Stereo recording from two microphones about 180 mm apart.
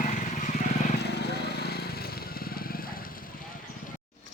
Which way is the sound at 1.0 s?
65° left (ahead or behind).